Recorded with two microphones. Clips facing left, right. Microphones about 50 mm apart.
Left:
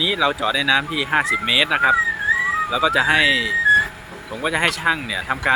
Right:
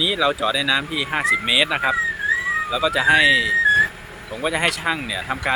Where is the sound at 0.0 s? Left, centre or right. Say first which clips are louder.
Even; centre.